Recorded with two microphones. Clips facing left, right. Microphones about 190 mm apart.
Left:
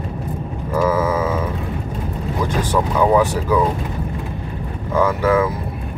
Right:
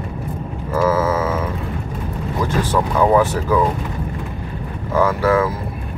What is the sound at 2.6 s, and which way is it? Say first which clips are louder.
Speech: even; 15° left (ahead or behind).